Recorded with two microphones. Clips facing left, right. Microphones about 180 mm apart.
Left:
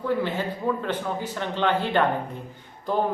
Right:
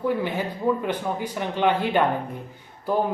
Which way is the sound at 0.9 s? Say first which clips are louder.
Right 1 dB; 10° right (ahead or behind).